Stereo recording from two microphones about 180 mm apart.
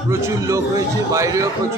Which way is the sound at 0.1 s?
15° right (ahead or behind).